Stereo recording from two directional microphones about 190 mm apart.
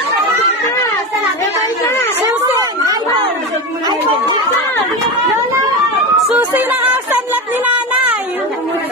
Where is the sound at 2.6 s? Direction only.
20° right (ahead or behind).